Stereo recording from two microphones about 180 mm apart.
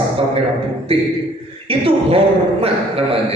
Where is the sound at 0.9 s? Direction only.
30° right (ahead or behind).